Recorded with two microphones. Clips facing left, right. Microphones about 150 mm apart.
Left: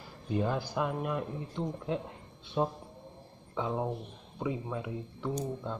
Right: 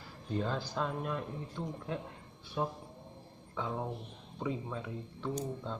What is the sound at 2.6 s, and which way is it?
A man's voice, 25° left (ahead or behind).